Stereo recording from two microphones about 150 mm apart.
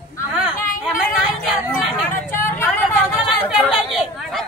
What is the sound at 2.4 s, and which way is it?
Vehicle, 15° left (ahead or behind).